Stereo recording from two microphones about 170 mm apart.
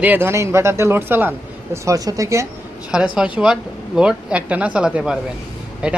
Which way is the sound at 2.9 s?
5° right (ahead or behind).